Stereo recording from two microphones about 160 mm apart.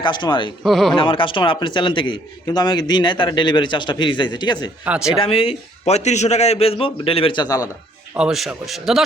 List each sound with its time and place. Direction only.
0.0 s a man's voice: 30° left (ahead or behind)
0.6 s speech: centre (ahead or behind)
0.9 s a man's voice: 30° left (ahead or behind)
4.9 s speech: 5° right (ahead or behind)
5.1 s a man's voice: 35° left (ahead or behind)
8.1 s speech: 5° right (ahead or behind)